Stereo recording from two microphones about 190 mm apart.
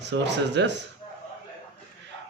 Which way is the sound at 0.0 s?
65° right (ahead or behind).